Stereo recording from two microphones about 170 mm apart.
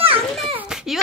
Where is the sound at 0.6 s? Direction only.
5° right (ahead or behind).